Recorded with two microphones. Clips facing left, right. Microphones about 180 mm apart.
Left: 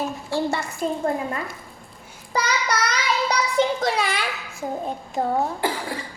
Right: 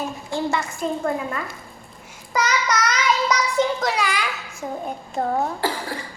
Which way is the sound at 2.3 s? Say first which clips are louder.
Right 2 dB; 30° left (ahead or behind).